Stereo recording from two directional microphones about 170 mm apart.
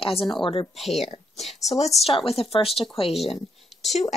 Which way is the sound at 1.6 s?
40° left (ahead or behind).